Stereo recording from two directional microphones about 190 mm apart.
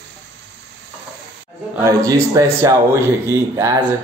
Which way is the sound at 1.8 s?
20° right (ahead or behind).